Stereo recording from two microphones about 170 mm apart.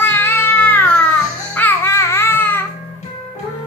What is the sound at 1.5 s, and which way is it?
Babbling, 10° left (ahead or behind).